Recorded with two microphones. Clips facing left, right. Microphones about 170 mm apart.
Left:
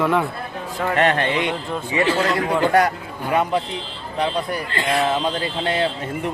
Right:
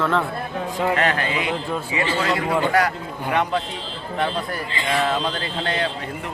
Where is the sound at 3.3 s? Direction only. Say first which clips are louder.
Left 2 dB; 20° left (ahead or behind).